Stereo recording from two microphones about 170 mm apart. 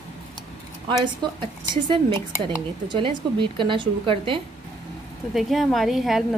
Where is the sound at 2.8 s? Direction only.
30° right (ahead or behind).